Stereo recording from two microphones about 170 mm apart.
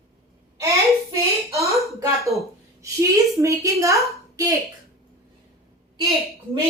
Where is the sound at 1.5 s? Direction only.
15° right (ahead or behind).